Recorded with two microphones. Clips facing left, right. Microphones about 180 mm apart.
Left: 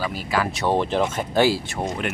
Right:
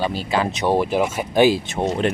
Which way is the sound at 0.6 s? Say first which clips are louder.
Right 2 dB; 10° right (ahead or behind).